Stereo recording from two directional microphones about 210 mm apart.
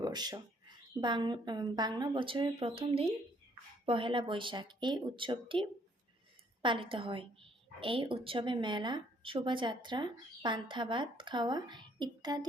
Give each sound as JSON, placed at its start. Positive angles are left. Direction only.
{"t": 0.0, "sound": "speech", "side_deg": -20}